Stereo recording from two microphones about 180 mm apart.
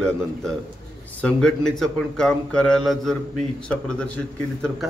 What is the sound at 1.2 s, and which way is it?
Speech, 5° left (ahead or behind).